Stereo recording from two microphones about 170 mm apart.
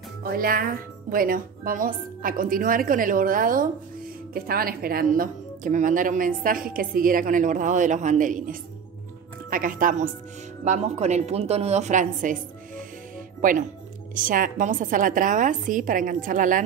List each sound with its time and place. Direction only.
0.2 s speech: 60° right (ahead or behind)
10.6 s speech: 40° right (ahead or behind)
13.4 s speech: 50° right (ahead or behind)